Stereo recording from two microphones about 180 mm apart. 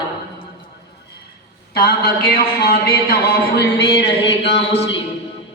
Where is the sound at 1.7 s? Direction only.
55° left (ahead or behind).